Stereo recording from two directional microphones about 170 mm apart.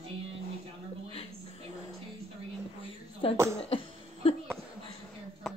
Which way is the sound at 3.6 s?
35° left (ahead or behind).